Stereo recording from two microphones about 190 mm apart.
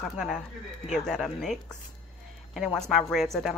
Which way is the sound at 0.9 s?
Centre (ahead or behind).